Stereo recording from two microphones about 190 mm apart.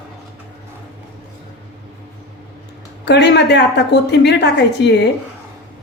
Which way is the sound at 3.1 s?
65° left (ahead or behind).